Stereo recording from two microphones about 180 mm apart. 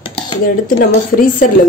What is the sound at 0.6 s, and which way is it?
Speech, 55° left (ahead or behind).